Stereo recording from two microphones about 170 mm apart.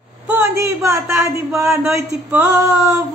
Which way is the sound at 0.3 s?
15° right (ahead or behind).